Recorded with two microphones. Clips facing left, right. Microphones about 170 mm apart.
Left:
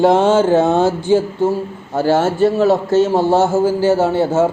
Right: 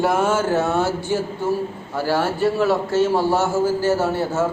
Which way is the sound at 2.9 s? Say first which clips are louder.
Left 5 dB; 20° left (ahead or behind).